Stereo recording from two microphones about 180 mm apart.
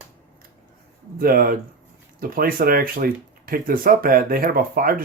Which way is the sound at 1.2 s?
55° right (ahead or behind).